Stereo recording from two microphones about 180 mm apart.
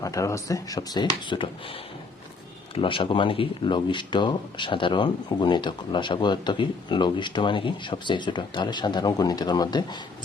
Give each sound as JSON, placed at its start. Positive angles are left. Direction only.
{"t": 0.0, "sound": "speech", "side_deg": 15}
{"t": 2.7, "sound": "speech", "side_deg": 30}